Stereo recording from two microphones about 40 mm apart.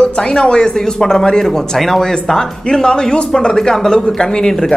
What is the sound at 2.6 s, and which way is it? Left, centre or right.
Speech, centre.